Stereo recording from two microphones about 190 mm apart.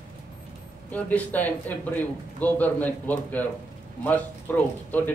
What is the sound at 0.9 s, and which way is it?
Speech, 10° left (ahead or behind).